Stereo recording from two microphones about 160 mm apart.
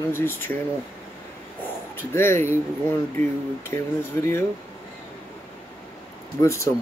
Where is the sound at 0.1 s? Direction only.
15° left (ahead or behind).